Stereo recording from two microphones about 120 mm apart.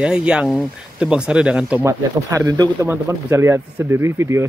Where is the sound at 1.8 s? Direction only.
25° right (ahead or behind).